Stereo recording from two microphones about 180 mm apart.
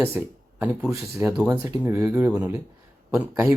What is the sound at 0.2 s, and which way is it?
Speech, 10° right (ahead or behind).